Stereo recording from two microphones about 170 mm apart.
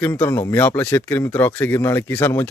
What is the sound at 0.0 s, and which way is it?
Speech, 15° left (ahead or behind).